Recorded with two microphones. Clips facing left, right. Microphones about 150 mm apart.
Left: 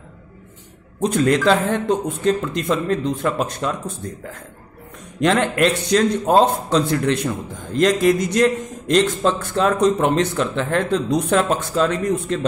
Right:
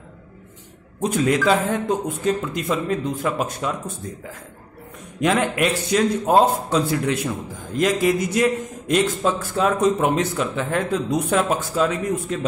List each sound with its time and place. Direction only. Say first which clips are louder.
1.0 s a man's voice: left 2 dB; 5° right (ahead or behind)
5.2 s a man's voice: left 3 dB; 5° right (ahead or behind)